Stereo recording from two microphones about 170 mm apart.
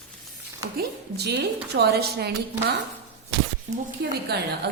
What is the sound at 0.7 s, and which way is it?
A woman's voice, 70° right (ahead or behind).